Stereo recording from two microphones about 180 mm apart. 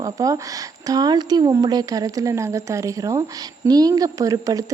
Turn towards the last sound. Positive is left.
turn(degrees=-20)  # may be behind; listen again after turning